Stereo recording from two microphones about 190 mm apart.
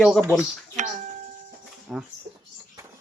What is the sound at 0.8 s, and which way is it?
Music, 40° right (ahead or behind).